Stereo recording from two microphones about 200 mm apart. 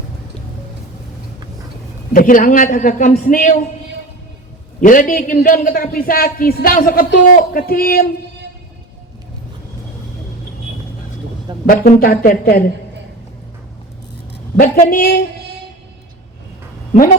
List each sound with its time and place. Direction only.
2.1 s a man's voice: 45° left (ahead or behind)
4.8 s a man's voice: 40° left (ahead or behind)
11.6 s a man's voice: 45° left (ahead or behind)
14.6 s a man's voice: 45° left (ahead or behind)